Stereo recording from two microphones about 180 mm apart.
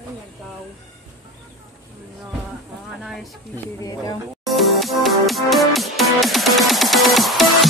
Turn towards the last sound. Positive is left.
turn(degrees=0)  # may be behind; listen again after turning